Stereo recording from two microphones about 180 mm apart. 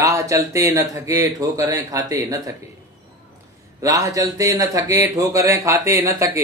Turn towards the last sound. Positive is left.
turn(degrees=-15)  # may be behind; listen again after turning